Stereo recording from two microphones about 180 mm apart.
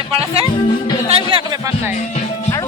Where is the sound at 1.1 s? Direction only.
30° right (ahead or behind).